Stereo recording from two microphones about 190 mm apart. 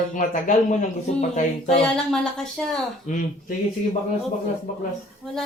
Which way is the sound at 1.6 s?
5° left (ahead or behind).